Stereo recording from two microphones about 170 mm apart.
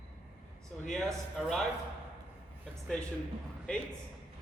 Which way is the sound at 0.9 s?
5° left (ahead or behind).